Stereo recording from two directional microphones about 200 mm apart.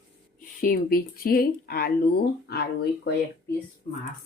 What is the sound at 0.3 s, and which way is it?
Speech, 45° left (ahead or behind).